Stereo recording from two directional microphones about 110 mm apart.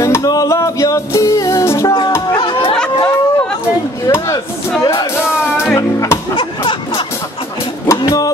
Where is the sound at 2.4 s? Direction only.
50° left (ahead or behind).